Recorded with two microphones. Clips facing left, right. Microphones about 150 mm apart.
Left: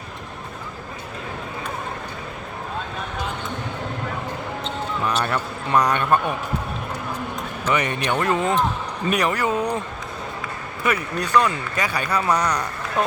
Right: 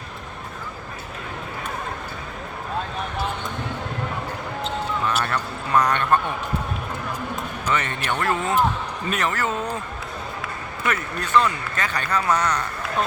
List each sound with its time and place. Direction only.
5.2 s speech: 15° left (ahead or behind)
7.7 s speech: 15° left (ahead or behind)
10.8 s speech: 15° left (ahead or behind)